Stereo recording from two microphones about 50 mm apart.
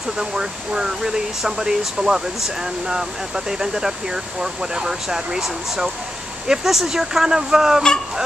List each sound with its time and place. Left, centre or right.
0.2 s speech: centre